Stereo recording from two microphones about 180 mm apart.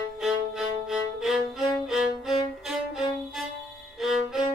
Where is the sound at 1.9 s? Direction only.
Centre (ahead or behind).